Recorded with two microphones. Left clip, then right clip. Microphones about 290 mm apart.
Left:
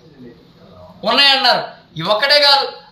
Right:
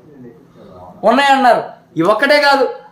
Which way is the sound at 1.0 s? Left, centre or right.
Right.